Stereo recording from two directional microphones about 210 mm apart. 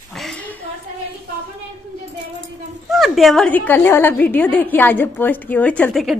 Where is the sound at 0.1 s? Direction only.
Centre (ahead or behind).